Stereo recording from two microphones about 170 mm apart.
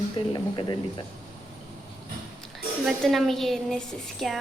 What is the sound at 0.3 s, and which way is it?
Speech, 30° left (ahead or behind).